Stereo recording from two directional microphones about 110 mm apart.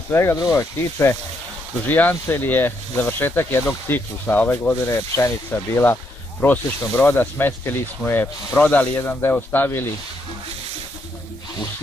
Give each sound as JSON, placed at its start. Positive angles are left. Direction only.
{"t": 0.1, "sound": "speech", "side_deg": 20}